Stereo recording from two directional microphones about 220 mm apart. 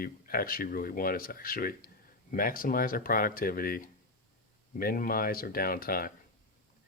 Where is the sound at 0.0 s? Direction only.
40° left (ahead or behind).